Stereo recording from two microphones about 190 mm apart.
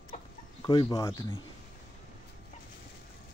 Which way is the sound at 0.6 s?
25° left (ahead or behind).